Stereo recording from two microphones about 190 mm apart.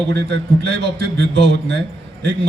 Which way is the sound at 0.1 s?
65° right (ahead or behind).